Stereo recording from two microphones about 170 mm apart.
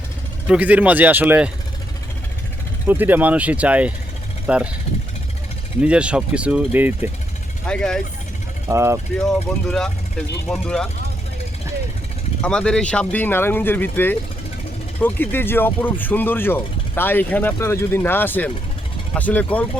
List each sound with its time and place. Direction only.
0.4 s speech: 10° right (ahead or behind)
2.8 s speech: 10° right (ahead or behind)
5.8 s speech: 5° right (ahead or behind)
7.7 s speech: 5° left (ahead or behind)
8.7 s speech: 15° right (ahead or behind)
9.2 s speech: 5° left (ahead or behind)
12.4 s speech: 5° left (ahead or behind)